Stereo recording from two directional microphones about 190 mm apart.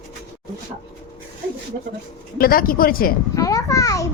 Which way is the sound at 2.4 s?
50° left (ahead or behind).